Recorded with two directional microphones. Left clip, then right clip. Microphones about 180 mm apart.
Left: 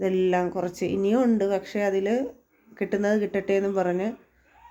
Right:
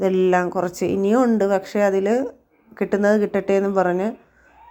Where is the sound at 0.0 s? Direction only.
15° right (ahead or behind).